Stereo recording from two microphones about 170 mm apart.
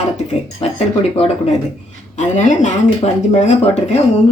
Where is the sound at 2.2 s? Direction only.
45° left (ahead or behind).